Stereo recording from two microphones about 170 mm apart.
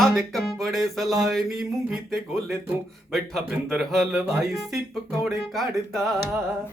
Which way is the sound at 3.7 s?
Centre (ahead or behind).